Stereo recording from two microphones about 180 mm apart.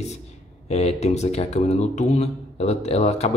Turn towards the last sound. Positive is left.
turn(degrees=35)  # may be behind; listen again after turning